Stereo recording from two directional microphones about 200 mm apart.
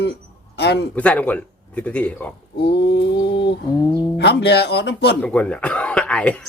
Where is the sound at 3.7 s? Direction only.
20° left (ahead or behind).